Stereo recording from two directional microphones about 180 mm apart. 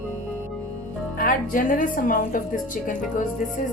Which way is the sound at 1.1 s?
50° left (ahead or behind).